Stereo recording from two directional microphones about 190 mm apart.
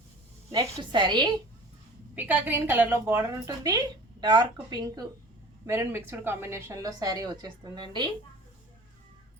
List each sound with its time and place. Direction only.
0.5 s a woman's voice: 20° right (ahead or behind)
2.1 s a woman's voice: 10° right (ahead or behind)
5.6 s a woman's voice: 15° right (ahead or behind)